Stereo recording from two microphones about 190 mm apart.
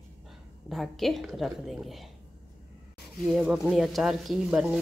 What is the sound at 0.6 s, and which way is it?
Speech, centre (ahead or behind).